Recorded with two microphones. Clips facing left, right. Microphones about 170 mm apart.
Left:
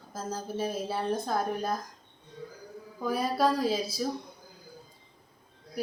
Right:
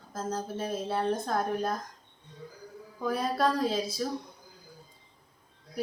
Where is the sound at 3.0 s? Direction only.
5° left (ahead or behind).